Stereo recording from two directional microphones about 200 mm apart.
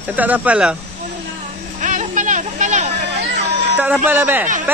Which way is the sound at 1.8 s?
40° right (ahead or behind).